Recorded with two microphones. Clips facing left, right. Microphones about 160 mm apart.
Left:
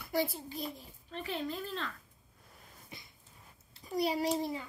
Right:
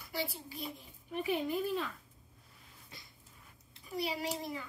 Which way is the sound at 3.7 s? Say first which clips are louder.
Left 5 dB; 40° left (ahead or behind).